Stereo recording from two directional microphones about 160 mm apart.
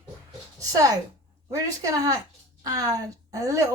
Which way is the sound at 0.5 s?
20° right (ahead or behind).